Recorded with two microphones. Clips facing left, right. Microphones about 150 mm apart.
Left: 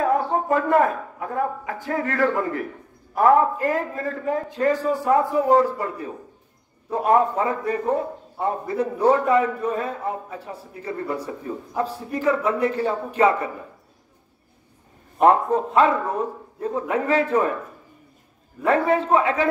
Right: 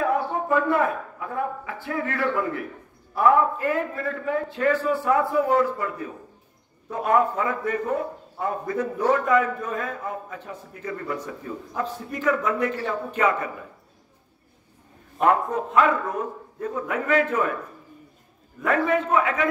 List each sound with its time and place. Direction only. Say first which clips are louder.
0.0 s a man's voice: left 3 dB; 40° left (ahead or behind)
6.9 s a man's voice: left 3 dB; 30° left (ahead or behind)
15.1 s a man's voice: left 4 dB; 30° left (ahead or behind)
18.6 s a man's voice: left 3 dB; 30° left (ahead or behind)